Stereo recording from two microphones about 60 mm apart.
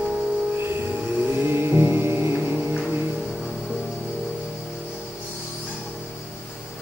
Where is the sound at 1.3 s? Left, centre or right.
Right.